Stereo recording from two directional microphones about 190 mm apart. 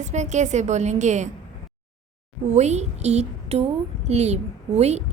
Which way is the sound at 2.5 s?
35° right (ahead or behind).